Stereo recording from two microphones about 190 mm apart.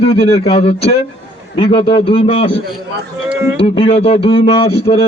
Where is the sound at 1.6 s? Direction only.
25° left (ahead or behind).